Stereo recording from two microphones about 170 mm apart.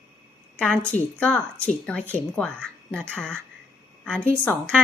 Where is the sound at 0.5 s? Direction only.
5° left (ahead or behind).